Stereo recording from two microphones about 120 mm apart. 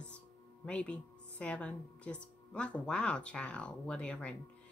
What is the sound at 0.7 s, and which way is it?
Speech, 10° left (ahead or behind).